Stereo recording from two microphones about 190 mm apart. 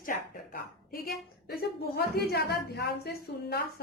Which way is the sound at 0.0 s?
45° left (ahead or behind).